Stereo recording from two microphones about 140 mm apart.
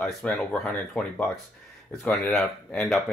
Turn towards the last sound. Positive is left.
turn(degrees=0)  # may be behind; listen again after turning